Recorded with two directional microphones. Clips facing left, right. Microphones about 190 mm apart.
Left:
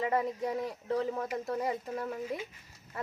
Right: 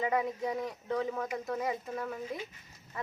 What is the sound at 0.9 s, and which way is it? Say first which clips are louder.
Speech: left 1 dB; 30° left (ahead or behind).